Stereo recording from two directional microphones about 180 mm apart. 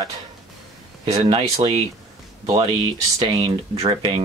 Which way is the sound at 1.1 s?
25° right (ahead or behind).